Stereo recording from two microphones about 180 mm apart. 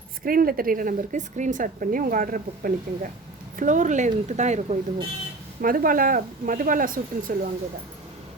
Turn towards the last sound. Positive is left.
turn(degrees=-50)  # may be behind; listen again after turning